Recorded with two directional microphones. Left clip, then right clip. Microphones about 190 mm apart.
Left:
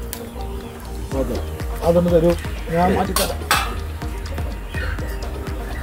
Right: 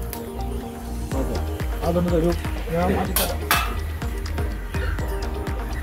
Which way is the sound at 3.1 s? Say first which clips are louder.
Left 3 dB; 15° right (ahead or behind).